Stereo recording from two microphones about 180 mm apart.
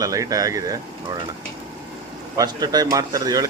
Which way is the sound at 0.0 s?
20° right (ahead or behind).